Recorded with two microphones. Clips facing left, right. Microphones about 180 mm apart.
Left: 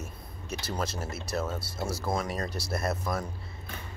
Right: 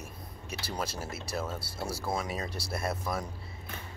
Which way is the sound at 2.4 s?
30° right (ahead or behind).